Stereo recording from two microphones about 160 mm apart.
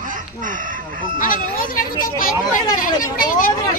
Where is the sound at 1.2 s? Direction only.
60° left (ahead or behind).